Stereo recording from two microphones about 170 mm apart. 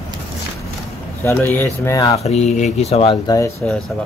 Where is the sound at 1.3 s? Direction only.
15° left (ahead or behind).